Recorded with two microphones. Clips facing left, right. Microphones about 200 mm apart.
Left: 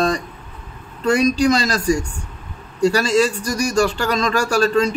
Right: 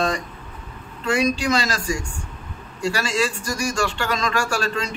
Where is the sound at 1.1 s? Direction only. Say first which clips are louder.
Left 5 dB; 40° left (ahead or behind).